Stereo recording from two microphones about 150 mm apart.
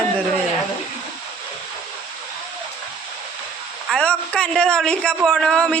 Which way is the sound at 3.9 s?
5° left (ahead or behind).